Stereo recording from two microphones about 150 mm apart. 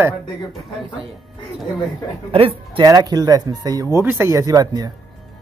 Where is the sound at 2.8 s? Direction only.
25° right (ahead or behind).